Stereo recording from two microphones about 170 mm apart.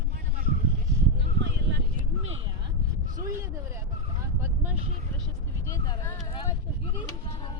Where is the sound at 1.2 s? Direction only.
90° right.